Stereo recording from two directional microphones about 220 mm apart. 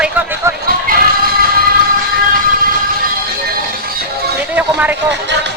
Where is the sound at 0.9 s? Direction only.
40° right (ahead or behind).